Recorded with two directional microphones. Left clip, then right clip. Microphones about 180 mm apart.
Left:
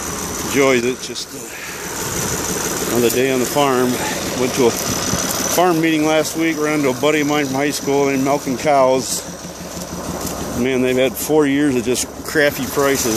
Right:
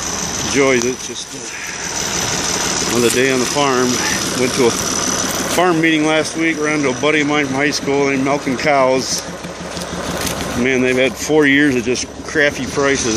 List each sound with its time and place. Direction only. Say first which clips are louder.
0.5 s speech: even; centre (ahead or behind)
2.3 s engine: right 3 dB; 40° right (ahead or behind)
3.0 s speech: right 1 dB; centre (ahead or behind)
4.2 s mechanisms: right 2 dB; 55° right (ahead or behind)
4.6 s vehicle: right 1 dB; 50° right (ahead or behind)
5.6 s speech: right 1 dB; 5° left (ahead or behind)
10.6 s speech: right 2 dB; 5° left (ahead or behind)